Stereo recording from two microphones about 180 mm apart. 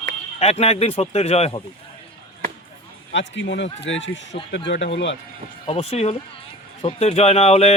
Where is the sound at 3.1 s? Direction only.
90° left.